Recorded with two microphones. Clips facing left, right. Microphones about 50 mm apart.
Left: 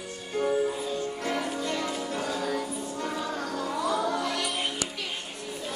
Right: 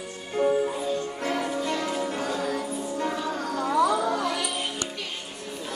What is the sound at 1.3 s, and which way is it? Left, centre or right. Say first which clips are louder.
Music: right 4 dB; centre.